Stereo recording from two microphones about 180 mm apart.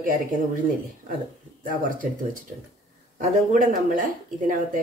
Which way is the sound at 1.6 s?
50° right (ahead or behind).